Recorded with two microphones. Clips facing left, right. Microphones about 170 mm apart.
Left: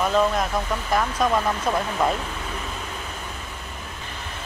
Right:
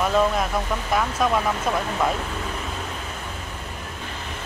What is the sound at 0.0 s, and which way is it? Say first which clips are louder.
Speech: even; centre (ahead or behind).